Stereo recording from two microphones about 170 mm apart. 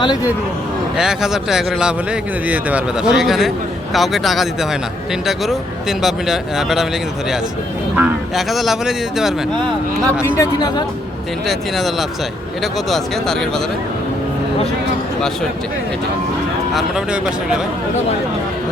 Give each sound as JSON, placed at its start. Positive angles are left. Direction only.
{"t": 0.9, "sound": "speech", "side_deg": -5}
{"t": 6.0, "sound": "speech", "side_deg": 0}
{"t": 7.9, "sound": "speech", "side_deg": -5}
{"t": 10.3, "sound": "speech", "side_deg": 25}
{"t": 11.4, "sound": "speech", "side_deg": 0}
{"t": 16.7, "sound": "speech", "side_deg": -5}